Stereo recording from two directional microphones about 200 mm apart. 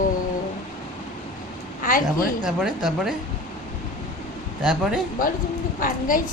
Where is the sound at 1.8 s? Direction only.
45° left (ahead or behind).